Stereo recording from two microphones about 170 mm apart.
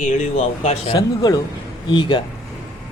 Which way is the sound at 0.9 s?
20° left (ahead or behind).